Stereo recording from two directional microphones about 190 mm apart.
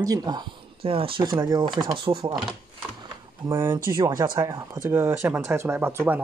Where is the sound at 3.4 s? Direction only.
15° right (ahead or behind).